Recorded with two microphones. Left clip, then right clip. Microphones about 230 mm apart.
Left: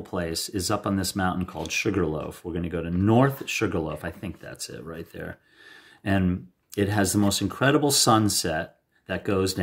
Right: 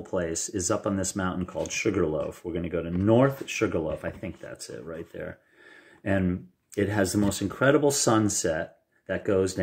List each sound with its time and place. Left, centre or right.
0.0 s speech: left